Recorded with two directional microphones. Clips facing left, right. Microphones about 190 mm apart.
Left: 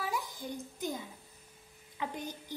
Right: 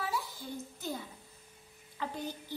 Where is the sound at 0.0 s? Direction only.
15° left (ahead or behind).